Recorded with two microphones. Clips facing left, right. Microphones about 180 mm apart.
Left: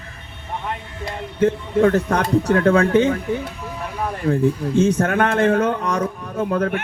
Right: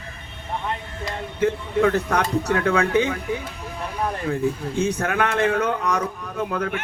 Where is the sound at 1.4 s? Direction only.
35° left (ahead or behind).